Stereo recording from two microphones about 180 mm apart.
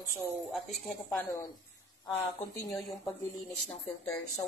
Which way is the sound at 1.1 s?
10° left (ahead or behind).